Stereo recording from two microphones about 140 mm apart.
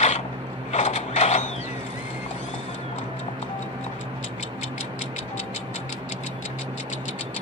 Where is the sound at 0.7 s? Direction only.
55° left (ahead or behind).